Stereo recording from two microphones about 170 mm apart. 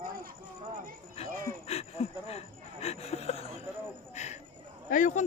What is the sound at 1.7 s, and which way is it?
Speech, 35° left (ahead or behind).